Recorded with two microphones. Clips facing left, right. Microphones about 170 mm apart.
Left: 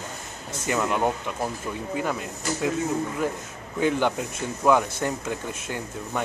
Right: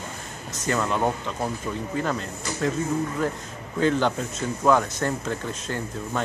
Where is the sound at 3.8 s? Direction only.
15° left (ahead or behind).